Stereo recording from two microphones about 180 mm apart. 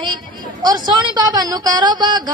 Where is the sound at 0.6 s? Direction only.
25° right (ahead or behind).